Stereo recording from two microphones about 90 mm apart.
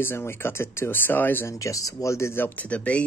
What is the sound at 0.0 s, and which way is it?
Speech, 25° left (ahead or behind).